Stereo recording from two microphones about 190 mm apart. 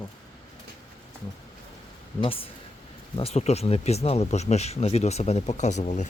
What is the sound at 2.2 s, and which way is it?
Speech, 30° left (ahead or behind).